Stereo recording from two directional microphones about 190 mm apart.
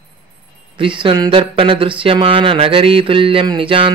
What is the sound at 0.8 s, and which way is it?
Speech, 25° right (ahead or behind).